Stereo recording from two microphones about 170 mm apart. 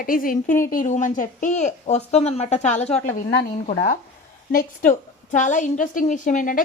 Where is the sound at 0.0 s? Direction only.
55° left (ahead or behind).